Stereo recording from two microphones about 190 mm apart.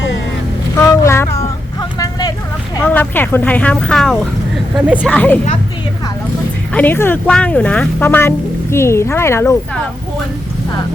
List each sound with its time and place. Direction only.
0.8 s child singing: 15° left (ahead or behind)
1.4 s vehicle: 15° left (ahead or behind)
2.8 s a woman's voice: 10° left (ahead or behind)
6.7 s speech: 10° left (ahead or behind)